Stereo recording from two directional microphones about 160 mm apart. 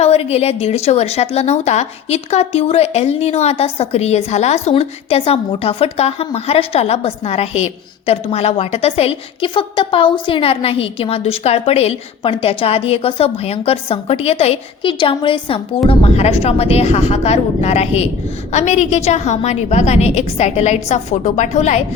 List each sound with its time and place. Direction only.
0.0 s a woman's voice: 40° left (ahead or behind)